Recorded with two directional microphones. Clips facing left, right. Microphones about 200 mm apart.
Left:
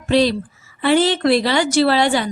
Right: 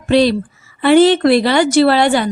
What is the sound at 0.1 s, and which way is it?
A woman's voice, 60° right (ahead or behind).